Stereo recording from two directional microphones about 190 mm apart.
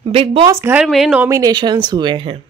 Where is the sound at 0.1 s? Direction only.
30° right (ahead or behind).